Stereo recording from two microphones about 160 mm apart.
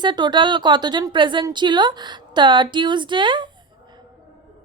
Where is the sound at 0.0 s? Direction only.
30° right (ahead or behind).